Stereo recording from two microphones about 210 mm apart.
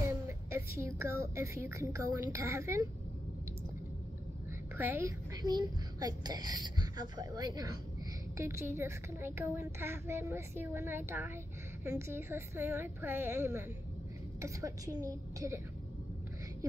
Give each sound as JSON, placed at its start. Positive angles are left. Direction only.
{"t": 0.3, "sound": "a child's voice", "side_deg": -15}
{"t": 4.7, "sound": "a woman's voice", "side_deg": -10}